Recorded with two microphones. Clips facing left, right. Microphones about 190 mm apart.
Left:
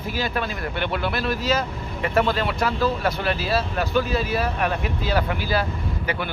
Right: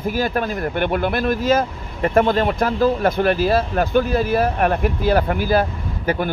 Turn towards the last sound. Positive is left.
turn(degrees=-50)  # may be behind; listen again after turning